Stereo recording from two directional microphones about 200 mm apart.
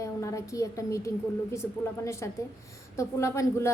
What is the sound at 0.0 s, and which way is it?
A woman's voice, 15° left (ahead or behind).